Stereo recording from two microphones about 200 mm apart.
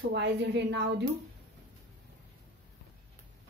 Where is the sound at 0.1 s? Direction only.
60° right (ahead or behind).